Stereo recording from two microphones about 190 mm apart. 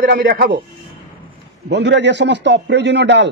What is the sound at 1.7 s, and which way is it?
A man's voice, 65° right (ahead or behind).